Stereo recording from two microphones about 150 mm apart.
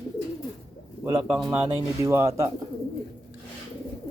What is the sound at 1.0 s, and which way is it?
Speech, 15° right (ahead or behind).